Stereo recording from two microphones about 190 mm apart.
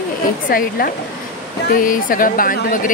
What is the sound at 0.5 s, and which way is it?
Speech, 50° left (ahead or behind).